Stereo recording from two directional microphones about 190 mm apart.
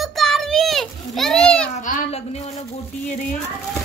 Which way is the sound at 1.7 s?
40° left (ahead or behind).